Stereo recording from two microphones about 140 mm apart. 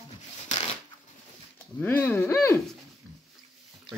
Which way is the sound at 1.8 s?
15° left (ahead or behind).